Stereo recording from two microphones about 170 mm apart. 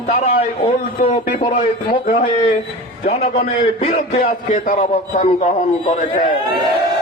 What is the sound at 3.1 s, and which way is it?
A man's voice, 40° left (ahead or behind).